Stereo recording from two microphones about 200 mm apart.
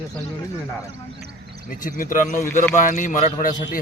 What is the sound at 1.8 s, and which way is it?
A man's voice, 40° left (ahead or behind).